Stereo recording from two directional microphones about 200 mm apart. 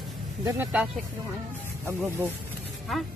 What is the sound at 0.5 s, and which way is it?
Speech, 10° right (ahead or behind).